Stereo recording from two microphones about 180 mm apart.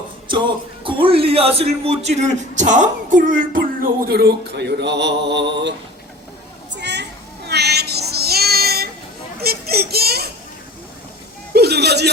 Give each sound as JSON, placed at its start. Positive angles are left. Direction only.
{"t": 0.3, "sound": "speech", "side_deg": -25}
{"t": 6.7, "sound": "a sound", "side_deg": -70}
{"t": 9.4, "sound": "a child's voice", "side_deg": -60}
{"t": 11.5, "sound": "speech", "side_deg": -65}